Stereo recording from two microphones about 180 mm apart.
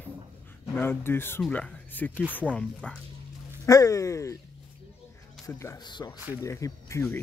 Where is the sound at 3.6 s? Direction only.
20° left (ahead or behind).